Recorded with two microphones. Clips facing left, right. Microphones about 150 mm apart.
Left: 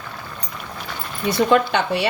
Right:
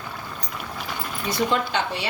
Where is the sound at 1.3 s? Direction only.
65° left (ahead or behind).